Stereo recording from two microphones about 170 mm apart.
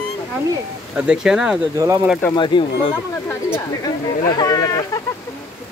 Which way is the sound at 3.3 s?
15° left (ahead or behind).